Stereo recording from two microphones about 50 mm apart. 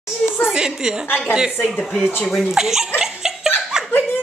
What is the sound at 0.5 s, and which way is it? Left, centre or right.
Speech, centre.